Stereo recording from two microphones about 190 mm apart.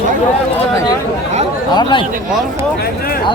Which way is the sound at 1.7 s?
25° left (ahead or behind).